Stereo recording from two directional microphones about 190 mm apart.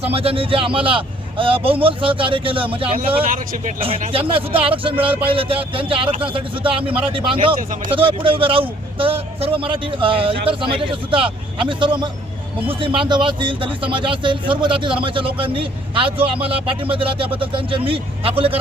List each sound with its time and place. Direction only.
0.0 s a man's voice: 30° right (ahead or behind)
3.2 s speech: 45° right (ahead or behind)
3.8 s a man's voice: 30° right (ahead or behind)